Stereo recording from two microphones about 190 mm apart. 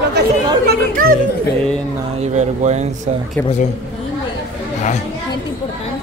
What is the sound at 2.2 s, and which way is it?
Speech, 35° right (ahead or behind).